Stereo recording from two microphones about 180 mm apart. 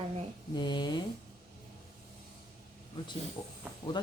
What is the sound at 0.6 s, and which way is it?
Speech, 25° left (ahead or behind).